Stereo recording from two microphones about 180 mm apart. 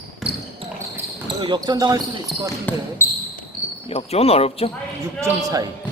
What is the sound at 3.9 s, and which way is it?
Speech, 35° left (ahead or behind).